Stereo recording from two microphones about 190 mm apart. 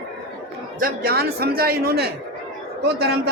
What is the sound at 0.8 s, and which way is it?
A man's voice, 50° right (ahead or behind).